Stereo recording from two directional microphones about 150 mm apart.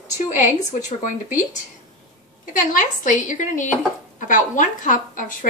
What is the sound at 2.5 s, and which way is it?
A woman's voice, 60° left (ahead or behind).